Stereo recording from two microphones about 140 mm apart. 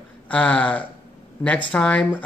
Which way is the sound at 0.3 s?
10° left (ahead or behind).